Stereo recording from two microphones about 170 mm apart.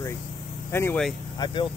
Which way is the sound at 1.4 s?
30° left (ahead or behind).